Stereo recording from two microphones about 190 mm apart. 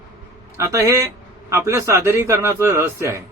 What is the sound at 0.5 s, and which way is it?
Speech, 15° right (ahead or behind).